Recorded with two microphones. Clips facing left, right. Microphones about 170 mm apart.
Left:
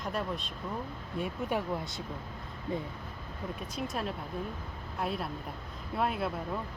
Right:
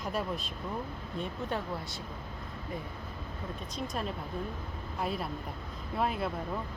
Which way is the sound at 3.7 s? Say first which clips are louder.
Even; 5° left (ahead or behind).